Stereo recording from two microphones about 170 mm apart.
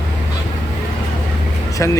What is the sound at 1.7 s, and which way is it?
Speech, 20° left (ahead or behind).